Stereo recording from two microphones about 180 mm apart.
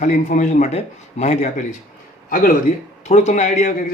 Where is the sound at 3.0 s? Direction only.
40° left (ahead or behind).